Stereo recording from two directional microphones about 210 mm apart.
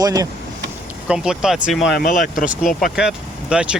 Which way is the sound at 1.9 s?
40° left (ahead or behind).